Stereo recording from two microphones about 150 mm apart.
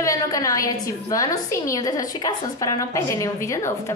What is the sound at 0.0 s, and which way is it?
A woman's voice, 20° left (ahead or behind).